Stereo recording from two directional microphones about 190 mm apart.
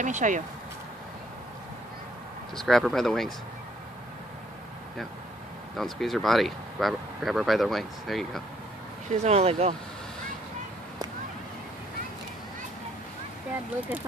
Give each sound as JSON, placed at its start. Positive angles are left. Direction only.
{"t": 0.0, "sound": "speech", "side_deg": -40}
{"t": 2.5, "sound": "speech", "side_deg": 0}
{"t": 5.8, "sound": "speech", "side_deg": 0}
{"t": 9.1, "sound": "speech", "side_deg": -35}